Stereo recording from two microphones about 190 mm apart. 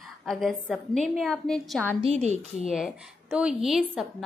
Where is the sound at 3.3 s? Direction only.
5° right (ahead or behind).